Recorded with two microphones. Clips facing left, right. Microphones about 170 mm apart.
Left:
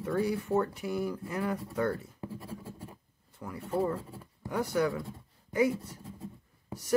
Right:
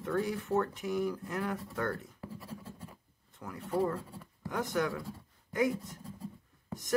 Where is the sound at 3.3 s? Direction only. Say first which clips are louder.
Left 3 dB; 10° left (ahead or behind).